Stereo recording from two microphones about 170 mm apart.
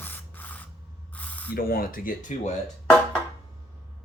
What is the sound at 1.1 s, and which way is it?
Mechanisms, 10° left (ahead or behind).